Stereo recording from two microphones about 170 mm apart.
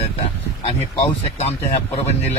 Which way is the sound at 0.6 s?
35° left (ahead or behind).